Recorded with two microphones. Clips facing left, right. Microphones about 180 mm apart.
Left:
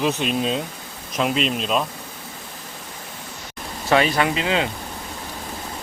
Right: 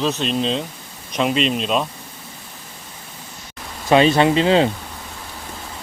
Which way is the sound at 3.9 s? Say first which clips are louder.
Right 5 dB; 25° right (ahead or behind).